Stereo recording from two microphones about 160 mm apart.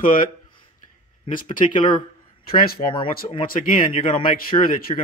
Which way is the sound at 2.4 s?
65° left (ahead or behind).